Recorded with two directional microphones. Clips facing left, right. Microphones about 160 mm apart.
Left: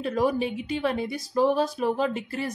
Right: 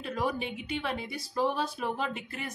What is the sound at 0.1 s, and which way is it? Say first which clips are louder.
A woman's voice: left 6 dB; 40° left (ahead or behind).